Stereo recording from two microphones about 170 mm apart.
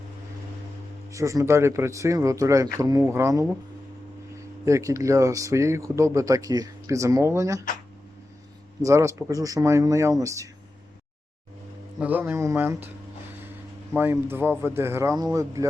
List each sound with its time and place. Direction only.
1.1 s speech: 20° right (ahead or behind)
4.6 s speech: 20° right (ahead or behind)
8.8 s speech: 15° right (ahead or behind)
11.9 s speech: 10° right (ahead or behind)
13.9 s speech: 10° right (ahead or behind)